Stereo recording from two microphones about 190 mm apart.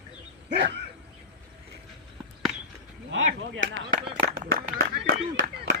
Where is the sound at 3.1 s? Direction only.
85° right.